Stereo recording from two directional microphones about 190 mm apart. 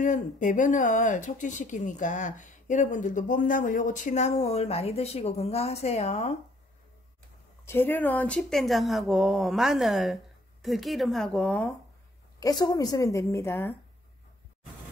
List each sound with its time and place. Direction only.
0.0 s speech: 40° left (ahead or behind)
7.6 s speech: 10° left (ahead or behind)
12.4 s a woman's voice: 20° left (ahead or behind)